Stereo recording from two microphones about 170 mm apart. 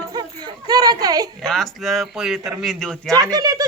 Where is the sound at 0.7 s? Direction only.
20° right (ahead or behind).